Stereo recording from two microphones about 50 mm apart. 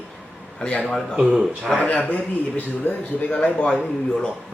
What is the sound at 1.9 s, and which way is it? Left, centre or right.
Speech, left.